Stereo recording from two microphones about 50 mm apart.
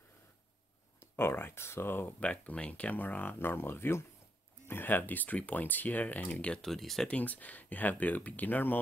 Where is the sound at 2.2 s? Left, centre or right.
Left.